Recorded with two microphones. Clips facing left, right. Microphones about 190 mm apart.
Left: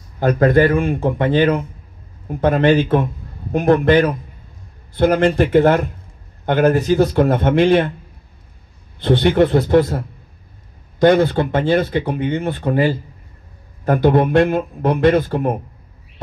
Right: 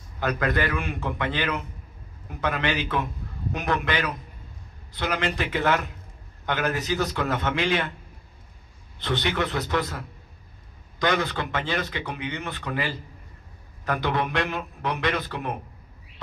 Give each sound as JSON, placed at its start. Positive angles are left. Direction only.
{"t": 0.2, "sound": "speech", "side_deg": 50}
{"t": 9.0, "sound": "speech", "side_deg": 50}